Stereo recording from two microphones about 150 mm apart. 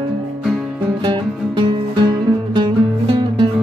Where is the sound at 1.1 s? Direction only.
30° right (ahead or behind).